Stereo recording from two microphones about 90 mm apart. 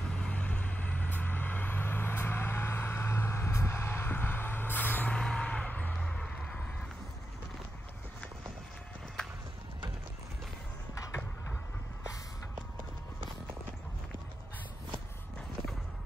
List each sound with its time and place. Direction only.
0.1 s vehicle: 15° left (ahead or behind)
5.1 s music: 10° left (ahead or behind)